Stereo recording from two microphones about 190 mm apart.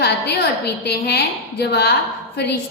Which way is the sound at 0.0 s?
60° left (ahead or behind).